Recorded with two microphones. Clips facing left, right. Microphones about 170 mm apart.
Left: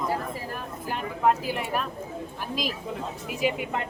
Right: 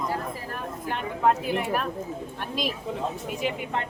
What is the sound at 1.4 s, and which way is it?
Speech, centre (ahead or behind).